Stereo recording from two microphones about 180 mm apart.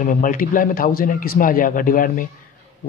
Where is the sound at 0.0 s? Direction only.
45° left (ahead or behind).